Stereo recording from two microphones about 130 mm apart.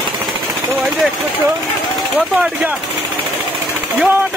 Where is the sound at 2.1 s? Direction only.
10° right (ahead or behind).